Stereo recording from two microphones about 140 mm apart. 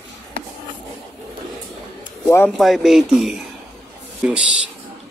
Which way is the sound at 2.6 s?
Centre (ahead or behind).